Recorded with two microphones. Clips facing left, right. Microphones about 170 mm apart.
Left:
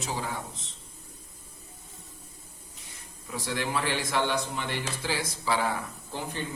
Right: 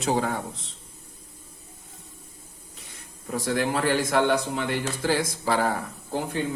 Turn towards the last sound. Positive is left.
turn(degrees=-55)  # may be behind; listen again after turning